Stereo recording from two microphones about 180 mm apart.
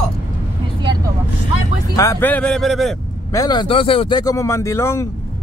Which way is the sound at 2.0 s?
15° left (ahead or behind).